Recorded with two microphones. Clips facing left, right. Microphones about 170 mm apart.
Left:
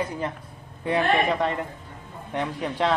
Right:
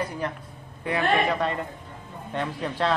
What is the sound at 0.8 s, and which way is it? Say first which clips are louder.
A man's voice: left 1 dB; 25° left (ahead or behind).